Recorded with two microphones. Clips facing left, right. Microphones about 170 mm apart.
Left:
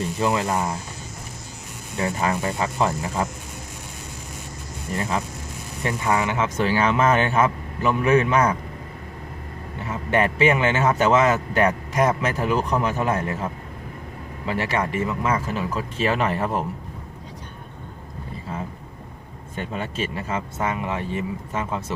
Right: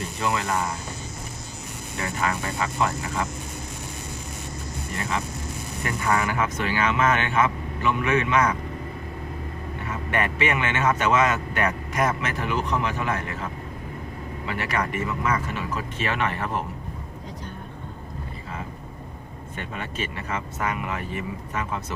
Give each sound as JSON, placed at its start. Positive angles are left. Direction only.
{"t": 0.2, "sound": "speech", "side_deg": 30}
{"t": 2.0, "sound": "speech", "side_deg": 25}
{"t": 4.9, "sound": "speech", "side_deg": 35}
{"t": 5.8, "sound": "speech", "side_deg": 20}
{"t": 9.8, "sound": "speech", "side_deg": 30}
{"t": 19.7, "sound": "speech", "side_deg": 30}